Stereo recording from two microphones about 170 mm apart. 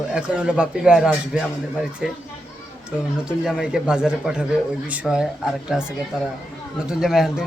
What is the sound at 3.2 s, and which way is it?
Speech, 5° right (ahead or behind).